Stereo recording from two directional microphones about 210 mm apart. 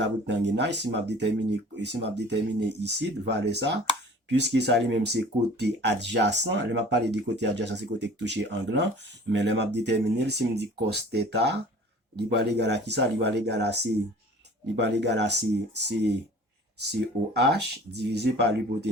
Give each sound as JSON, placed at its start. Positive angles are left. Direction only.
{"t": 0.0, "sound": "speech", "side_deg": -55}
{"t": 17.3, "sound": "speech", "side_deg": -50}